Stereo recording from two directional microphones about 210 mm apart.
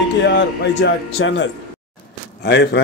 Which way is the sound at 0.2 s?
55° left (ahead or behind).